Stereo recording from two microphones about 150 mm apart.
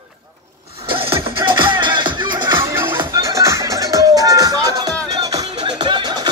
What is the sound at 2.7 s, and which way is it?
Music, 15° right (ahead or behind).